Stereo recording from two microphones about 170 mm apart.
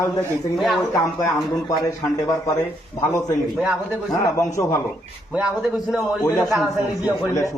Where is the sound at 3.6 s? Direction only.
Centre (ahead or behind).